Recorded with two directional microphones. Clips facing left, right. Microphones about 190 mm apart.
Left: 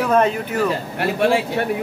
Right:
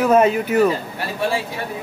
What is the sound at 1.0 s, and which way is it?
Speech, 65° left (ahead or behind).